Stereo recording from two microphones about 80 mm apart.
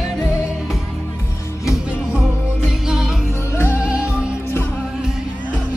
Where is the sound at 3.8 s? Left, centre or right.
Centre.